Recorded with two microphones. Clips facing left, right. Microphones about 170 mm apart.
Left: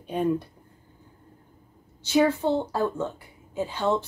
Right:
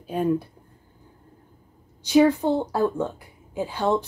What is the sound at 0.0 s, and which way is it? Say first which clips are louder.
Speech: right 2 dB; 5° right (ahead or behind).